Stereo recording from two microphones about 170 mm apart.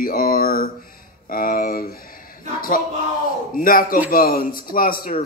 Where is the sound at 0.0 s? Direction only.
60° left (ahead or behind).